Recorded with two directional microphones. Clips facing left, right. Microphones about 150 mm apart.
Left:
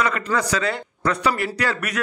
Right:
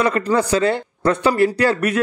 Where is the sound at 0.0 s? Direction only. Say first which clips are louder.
Right 5 dB; 30° right (ahead or behind).